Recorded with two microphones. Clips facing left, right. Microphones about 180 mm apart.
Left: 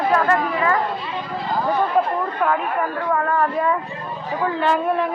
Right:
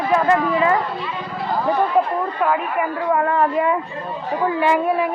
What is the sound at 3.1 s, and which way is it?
Speech, 25° right (ahead or behind).